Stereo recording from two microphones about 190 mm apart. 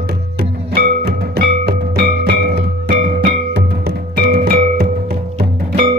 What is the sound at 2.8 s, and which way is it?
Music, 35° right (ahead or behind).